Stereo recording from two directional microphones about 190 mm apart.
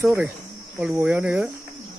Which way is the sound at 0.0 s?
10° right (ahead or behind).